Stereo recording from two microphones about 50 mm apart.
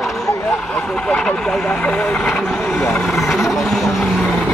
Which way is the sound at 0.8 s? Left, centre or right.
Centre.